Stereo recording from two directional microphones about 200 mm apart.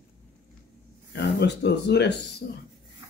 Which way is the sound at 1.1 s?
55° left (ahead or behind).